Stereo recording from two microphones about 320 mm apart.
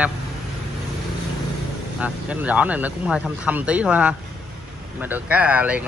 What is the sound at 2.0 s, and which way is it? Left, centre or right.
Speech, centre.